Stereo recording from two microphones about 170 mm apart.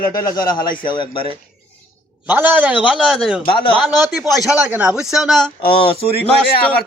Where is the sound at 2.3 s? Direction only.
10° right (ahead or behind).